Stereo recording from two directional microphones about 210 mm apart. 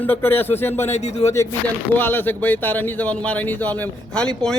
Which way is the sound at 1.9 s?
10° left (ahead or behind).